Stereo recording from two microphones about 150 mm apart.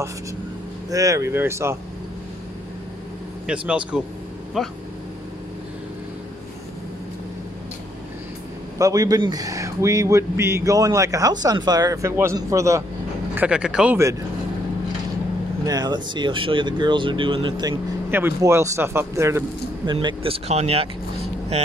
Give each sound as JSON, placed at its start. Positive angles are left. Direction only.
{"t": 0.8, "sound": "speech", "side_deg": -25}
{"t": 3.4, "sound": "speech", "side_deg": -5}
{"t": 8.7, "sound": "speech", "side_deg": -20}
{"t": 13.3, "sound": "speech", "side_deg": -10}
{"t": 15.6, "sound": "speech", "side_deg": -25}
{"t": 18.1, "sound": "speech", "side_deg": -15}
{"t": 19.9, "sound": "speech", "side_deg": -30}